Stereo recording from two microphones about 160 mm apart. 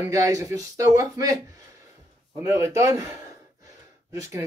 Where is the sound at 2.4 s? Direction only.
20° right (ahead or behind).